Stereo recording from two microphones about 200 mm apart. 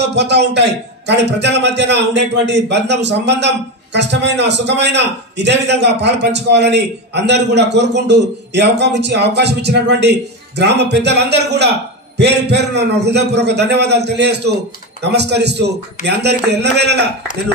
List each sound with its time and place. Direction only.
0.0 s a man's voice: 60° right (ahead or behind)